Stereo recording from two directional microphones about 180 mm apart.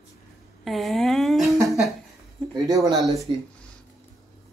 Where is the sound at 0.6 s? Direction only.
Centre (ahead or behind).